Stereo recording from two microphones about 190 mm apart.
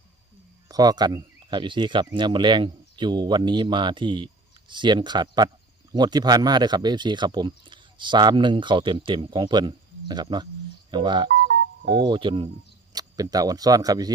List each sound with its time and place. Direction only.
0.7 s speech: 20° right (ahead or behind)
11.4 s music: 60° right (ahead or behind)
12.0 s speech: 25° right (ahead or behind)